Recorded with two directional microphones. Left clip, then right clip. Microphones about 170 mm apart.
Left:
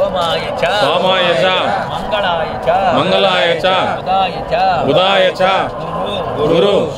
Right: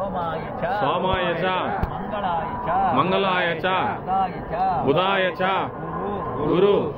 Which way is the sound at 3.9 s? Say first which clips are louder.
Left 9 dB; 80° left.